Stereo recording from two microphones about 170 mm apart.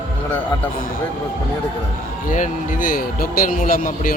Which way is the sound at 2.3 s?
50° left (ahead or behind).